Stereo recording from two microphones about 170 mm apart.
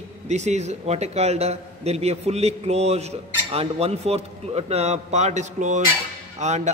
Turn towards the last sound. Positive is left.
turn(degrees=-40)  # may be behind; listen again after turning